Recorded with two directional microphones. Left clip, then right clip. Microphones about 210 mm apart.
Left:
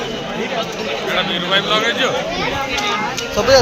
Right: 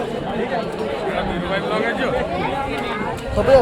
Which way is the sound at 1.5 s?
20° left (ahead or behind).